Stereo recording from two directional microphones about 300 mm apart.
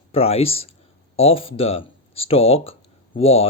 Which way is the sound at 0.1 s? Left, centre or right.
Centre.